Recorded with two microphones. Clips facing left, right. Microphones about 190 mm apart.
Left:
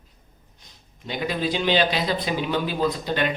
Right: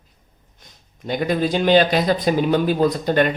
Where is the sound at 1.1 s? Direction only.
50° right (ahead or behind).